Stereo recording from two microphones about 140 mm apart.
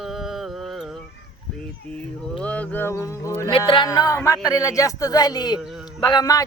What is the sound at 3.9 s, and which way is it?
Speech, 25° left (ahead or behind).